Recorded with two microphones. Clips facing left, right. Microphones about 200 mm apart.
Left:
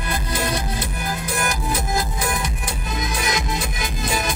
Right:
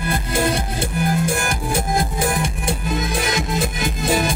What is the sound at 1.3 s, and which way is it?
Music, 50° right (ahead or behind).